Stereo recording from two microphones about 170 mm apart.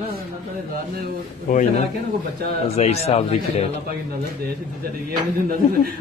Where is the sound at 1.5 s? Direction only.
50° left (ahead or behind).